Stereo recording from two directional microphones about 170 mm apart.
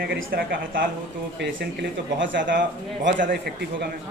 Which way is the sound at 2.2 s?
90° right.